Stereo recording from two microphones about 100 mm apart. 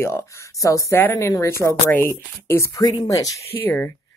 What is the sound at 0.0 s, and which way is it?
Speech, 30° left (ahead or behind).